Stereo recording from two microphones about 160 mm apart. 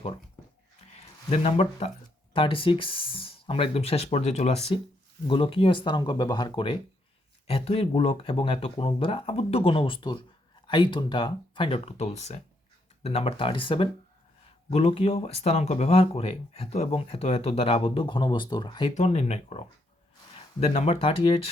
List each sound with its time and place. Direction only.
0.9 s a sound: 40° left (ahead or behind)
2.3 s speech: 35° left (ahead or behind)
18.9 s speech: 45° left (ahead or behind)